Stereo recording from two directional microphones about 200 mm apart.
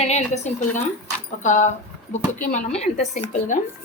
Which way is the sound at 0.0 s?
35° left (ahead or behind).